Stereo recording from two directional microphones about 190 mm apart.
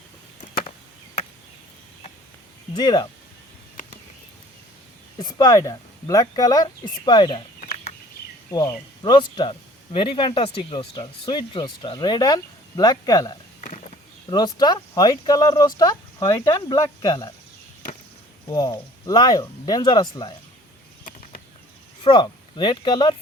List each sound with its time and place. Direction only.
2.7 s speech: 20° left (ahead or behind)
5.2 s speech: 20° left (ahead or behind)
7.6 s a sound: 40° left (ahead or behind)
8.4 s speech: 20° left (ahead or behind)
13.6 s a sound: 35° left (ahead or behind)
14.3 s speech: 20° left (ahead or behind)
18.4 s speech: 20° left (ahead or behind)
22.0 s speech: 25° left (ahead or behind)